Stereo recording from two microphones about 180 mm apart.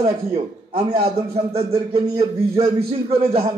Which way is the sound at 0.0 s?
35° right (ahead or behind).